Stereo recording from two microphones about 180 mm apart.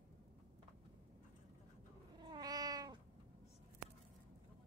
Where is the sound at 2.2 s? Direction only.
25° right (ahead or behind).